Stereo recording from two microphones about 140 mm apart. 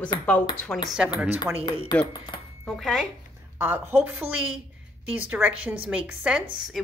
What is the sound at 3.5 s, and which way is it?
A woman's voice, 15° right (ahead or behind).